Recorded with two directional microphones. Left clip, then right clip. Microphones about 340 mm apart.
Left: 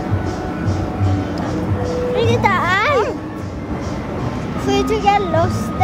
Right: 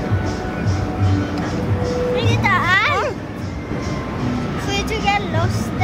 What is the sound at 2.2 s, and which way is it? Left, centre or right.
Music, left.